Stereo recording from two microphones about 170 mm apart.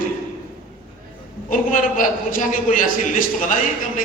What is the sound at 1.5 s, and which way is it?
A man's voice, 50° left (ahead or behind).